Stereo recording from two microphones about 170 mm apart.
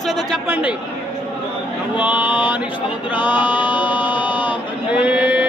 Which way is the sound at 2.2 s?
25° left (ahead or behind).